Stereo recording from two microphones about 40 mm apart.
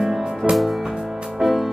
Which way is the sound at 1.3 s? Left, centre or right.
Centre.